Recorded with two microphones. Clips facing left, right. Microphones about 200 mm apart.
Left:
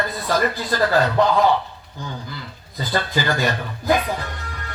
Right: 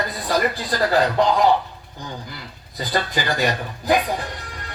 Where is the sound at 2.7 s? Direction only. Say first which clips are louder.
Left 1 dB; 15° right (ahead or behind).